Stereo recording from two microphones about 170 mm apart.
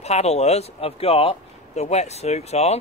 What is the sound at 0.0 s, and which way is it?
Speech, 40° left (ahead or behind).